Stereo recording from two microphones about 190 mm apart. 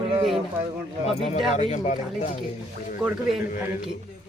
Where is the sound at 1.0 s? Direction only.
35° left (ahead or behind).